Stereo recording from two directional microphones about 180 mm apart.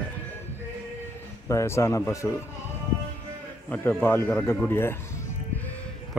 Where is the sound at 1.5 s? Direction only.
15° left (ahead or behind).